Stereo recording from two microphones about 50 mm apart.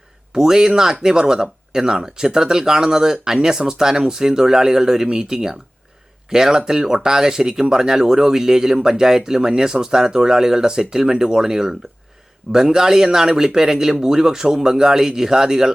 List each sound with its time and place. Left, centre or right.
0.3 s speech: centre